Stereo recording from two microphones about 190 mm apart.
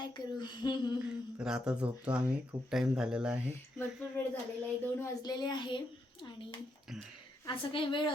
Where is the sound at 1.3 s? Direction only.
5° right (ahead or behind).